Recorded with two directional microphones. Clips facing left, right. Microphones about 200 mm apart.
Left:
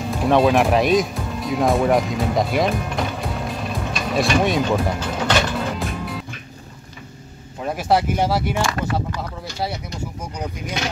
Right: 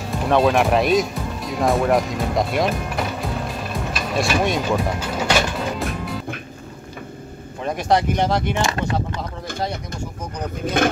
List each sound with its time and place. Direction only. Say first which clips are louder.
0.2 s music: left 1 dB; centre (ahead or behind)
7.6 s speech: even; 5° left (ahead or behind)
8.5 s speech: even; 25° right (ahead or behind)
10.8 s a sound: right 9 dB; 50° right (ahead or behind)